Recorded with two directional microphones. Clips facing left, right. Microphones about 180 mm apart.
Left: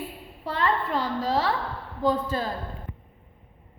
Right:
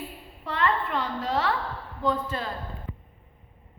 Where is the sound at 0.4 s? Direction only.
35° left (ahead or behind).